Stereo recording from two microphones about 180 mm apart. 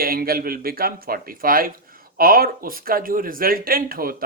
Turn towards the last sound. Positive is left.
turn(degrees=-55)  # may be behind; listen again after turning